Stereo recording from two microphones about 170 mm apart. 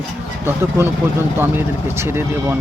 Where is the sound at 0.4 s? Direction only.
15° right (ahead or behind).